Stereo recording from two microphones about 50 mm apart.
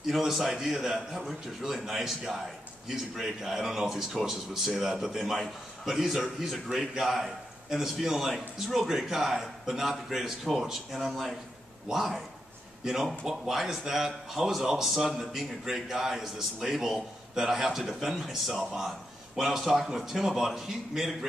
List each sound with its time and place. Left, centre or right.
0.0 s a man's voice: centre